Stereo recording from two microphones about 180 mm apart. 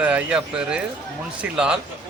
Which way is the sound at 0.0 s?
5° right (ahead or behind).